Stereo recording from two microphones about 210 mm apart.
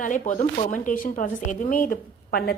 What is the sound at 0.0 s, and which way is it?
Speech, 40° left (ahead or behind).